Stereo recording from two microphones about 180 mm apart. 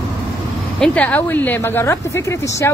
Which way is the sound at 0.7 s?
5° left (ahead or behind).